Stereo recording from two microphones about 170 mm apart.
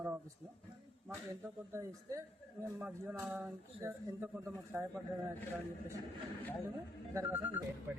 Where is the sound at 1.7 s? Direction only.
15° right (ahead or behind).